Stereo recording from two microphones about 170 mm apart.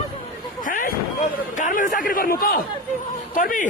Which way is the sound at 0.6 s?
55° left (ahead or behind).